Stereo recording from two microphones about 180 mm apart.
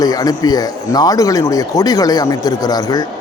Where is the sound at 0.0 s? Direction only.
20° left (ahead or behind).